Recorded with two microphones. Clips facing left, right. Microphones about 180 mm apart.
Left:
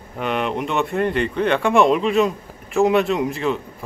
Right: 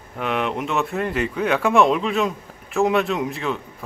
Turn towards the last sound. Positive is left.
turn(degrees=0)  # may be behind; listen again after turning